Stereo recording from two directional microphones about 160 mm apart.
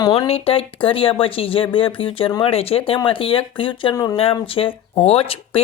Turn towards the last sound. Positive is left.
turn(degrees=35)  # may be behind; listen again after turning